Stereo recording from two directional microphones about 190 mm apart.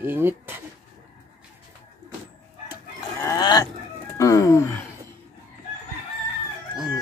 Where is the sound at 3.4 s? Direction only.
25° left (ahead or behind).